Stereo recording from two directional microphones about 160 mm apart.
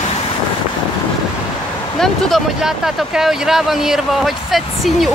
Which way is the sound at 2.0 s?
Centre (ahead or behind).